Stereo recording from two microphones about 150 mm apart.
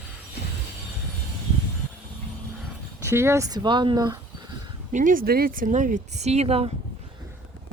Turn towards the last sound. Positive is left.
turn(degrees=-40)  # may be behind; listen again after turning